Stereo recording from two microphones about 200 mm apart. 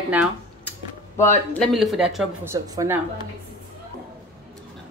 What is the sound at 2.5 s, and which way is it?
Speech, 15° right (ahead or behind).